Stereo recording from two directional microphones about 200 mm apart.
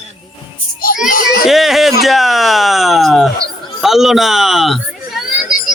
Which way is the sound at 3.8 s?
Centre (ahead or behind).